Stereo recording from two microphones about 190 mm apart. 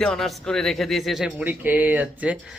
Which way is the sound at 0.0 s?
Centre (ahead or behind).